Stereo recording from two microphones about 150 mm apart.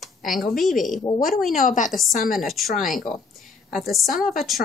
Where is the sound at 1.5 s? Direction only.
60° left (ahead or behind).